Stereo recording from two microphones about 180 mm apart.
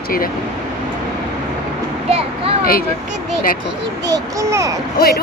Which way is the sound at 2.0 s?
35° right (ahead or behind).